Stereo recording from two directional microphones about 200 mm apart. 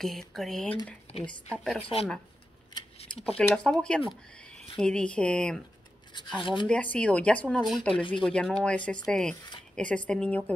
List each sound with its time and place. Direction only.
0.0 s speech: centre (ahead or behind)
1.8 s speech: 25° left (ahead or behind)
2.7 s a sound: 30° left (ahead or behind)
3.3 s speech: 5° left (ahead or behind)
6.4 s speech: 25° left (ahead or behind)
6.7 s speech: 5° left (ahead or behind)